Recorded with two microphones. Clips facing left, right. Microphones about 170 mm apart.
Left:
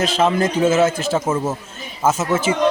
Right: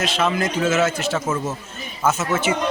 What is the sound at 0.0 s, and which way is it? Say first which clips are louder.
A man's voice: left 4 dB; 30° left (ahead or behind).